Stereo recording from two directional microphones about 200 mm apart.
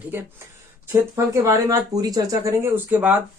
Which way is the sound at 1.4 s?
15° right (ahead or behind).